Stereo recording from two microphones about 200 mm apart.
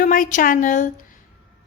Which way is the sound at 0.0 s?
40° left (ahead or behind).